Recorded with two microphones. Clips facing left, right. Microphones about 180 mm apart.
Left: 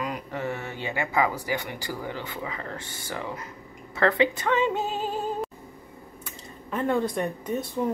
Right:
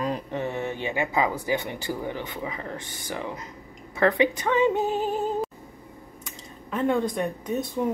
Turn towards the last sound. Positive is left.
turn(degrees=-10)  # may be behind; listen again after turning